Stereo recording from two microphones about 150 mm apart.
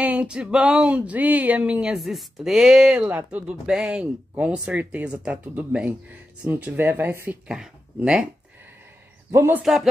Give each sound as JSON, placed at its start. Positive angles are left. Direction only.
{"t": 0.0, "sound": "speech", "side_deg": -10}
{"t": 9.3, "sound": "speech", "side_deg": -15}
{"t": 9.6, "sound": "speech", "side_deg": 0}